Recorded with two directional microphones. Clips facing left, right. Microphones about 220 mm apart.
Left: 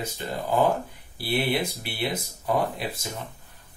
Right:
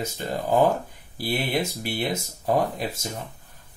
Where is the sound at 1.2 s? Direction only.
45° right (ahead or behind).